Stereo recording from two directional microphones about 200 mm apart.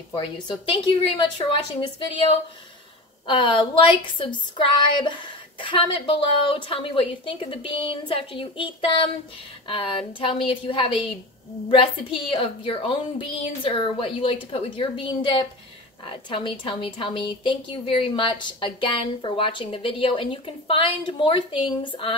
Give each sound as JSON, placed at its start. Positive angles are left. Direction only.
{"t": 0.1, "sound": "a woman's voice", "side_deg": 25}